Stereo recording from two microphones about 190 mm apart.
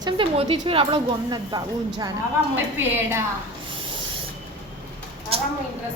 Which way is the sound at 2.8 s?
10° right (ahead or behind).